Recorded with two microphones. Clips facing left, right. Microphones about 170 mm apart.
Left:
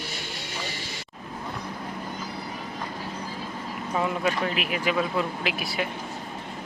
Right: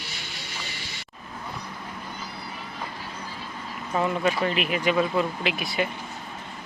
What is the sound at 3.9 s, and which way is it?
Speech, centre (ahead or behind).